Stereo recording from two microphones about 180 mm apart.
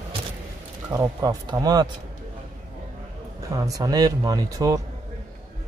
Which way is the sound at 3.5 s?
20° right (ahead or behind).